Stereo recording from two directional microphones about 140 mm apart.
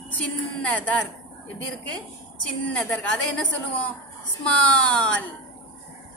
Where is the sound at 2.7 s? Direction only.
10° left (ahead or behind).